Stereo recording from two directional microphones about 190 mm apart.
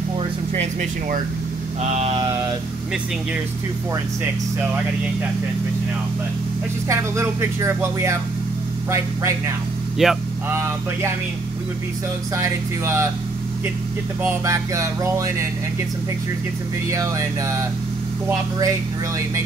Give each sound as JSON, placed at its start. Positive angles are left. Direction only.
{"t": 1.8, "sound": "vehicle", "side_deg": -35}
{"t": 6.9, "sound": "speech", "side_deg": -15}
{"t": 10.0, "sound": "speech", "side_deg": 0}
{"t": 10.5, "sound": "speech", "side_deg": -15}
{"t": 12.4, "sound": "speech", "side_deg": -15}
{"t": 14.2, "sound": "speech", "side_deg": -15}
{"t": 16.9, "sound": "speech", "side_deg": -15}